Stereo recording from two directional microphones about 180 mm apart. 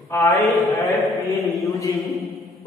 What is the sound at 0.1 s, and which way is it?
Speech, 15° left (ahead or behind).